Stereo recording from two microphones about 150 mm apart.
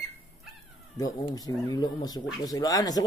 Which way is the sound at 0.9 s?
25° left (ahead or behind).